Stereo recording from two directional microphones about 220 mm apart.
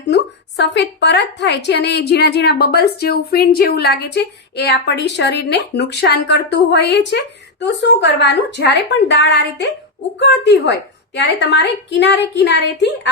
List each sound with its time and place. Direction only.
0.1 s a woman's voice: 50° left (ahead or behind)